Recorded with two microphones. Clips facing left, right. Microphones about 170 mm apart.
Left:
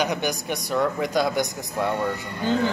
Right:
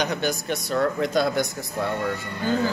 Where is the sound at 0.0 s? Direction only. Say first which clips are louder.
Even; 15° left (ahead or behind).